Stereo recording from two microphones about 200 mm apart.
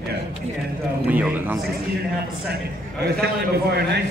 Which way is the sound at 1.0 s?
10° right (ahead or behind).